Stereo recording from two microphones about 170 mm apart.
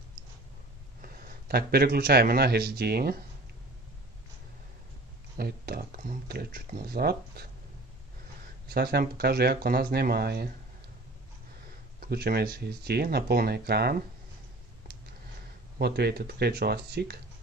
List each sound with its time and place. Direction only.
1.0 s speech: 65° right (ahead or behind)
5.4 s a sound: 65° right (ahead or behind)
8.6 s speech: 70° right (ahead or behind)
12.0 s speech: 70° right (ahead or behind)
15.8 s speech: 70° right (ahead or behind)